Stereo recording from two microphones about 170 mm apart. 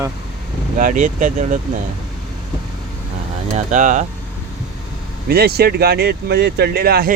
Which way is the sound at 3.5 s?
45° right (ahead or behind).